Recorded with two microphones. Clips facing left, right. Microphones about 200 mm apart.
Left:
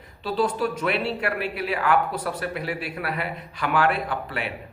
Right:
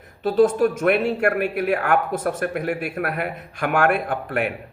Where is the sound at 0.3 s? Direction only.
45° right (ahead or behind).